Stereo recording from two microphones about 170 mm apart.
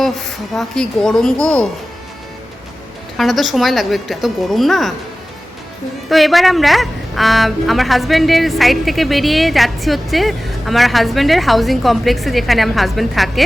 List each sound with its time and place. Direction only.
0.0 s a woman's voice: centre (ahead or behind)
3.2 s a woman's voice: centre (ahead or behind)
6.1 s a woman's voice: centre (ahead or behind)